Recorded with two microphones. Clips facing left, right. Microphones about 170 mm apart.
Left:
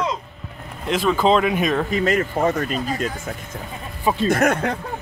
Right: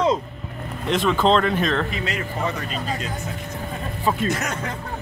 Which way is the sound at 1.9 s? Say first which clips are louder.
Left 8 dB; 50° left (ahead or behind).